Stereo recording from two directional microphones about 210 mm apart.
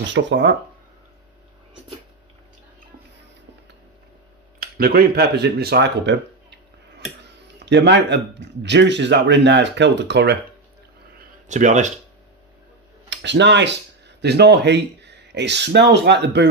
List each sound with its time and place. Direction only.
0.0 s speech: 60° right (ahead or behind)
4.6 s speech: 45° right (ahead or behind)
11.1 s a sound: 35° right (ahead or behind)
13.1 s speech: 55° right (ahead or behind)